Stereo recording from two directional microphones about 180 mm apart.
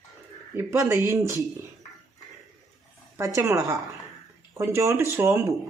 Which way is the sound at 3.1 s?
15° right (ahead or behind).